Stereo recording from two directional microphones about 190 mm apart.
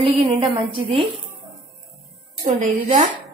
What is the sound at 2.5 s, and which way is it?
Speech, 40° right (ahead or behind).